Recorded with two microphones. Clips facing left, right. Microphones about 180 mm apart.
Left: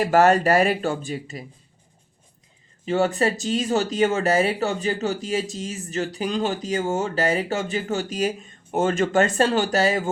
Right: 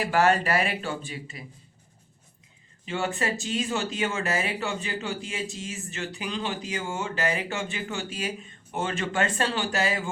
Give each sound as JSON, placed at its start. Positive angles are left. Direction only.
{"t": 0.0, "sound": "speech", "side_deg": 45}
{"t": 2.8, "sound": "speech", "side_deg": 40}